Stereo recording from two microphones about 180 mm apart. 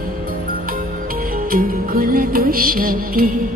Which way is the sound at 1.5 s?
55° right (ahead or behind).